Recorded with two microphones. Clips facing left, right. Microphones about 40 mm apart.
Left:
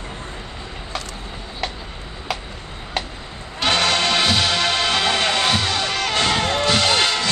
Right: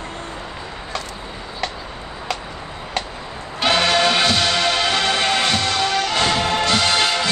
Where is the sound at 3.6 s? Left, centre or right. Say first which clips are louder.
Right 2 dB; centre.